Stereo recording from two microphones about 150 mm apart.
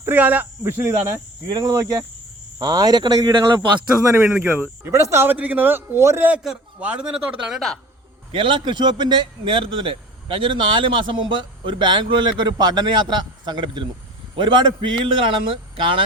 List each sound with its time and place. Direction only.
0.0 s speech: 10° right (ahead or behind); by 3.8 s 30° right (ahead or behind)
4.3 s a man's voice: 15° right (ahead or behind)
8.3 s a man's voice: 35° right (ahead or behind)